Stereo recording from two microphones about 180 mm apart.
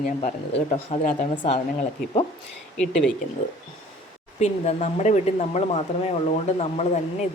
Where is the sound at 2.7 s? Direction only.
5° left (ahead or behind).